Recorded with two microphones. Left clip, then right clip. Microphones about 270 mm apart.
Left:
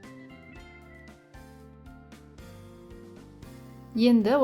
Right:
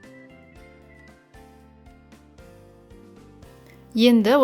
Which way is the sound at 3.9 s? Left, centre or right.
Right.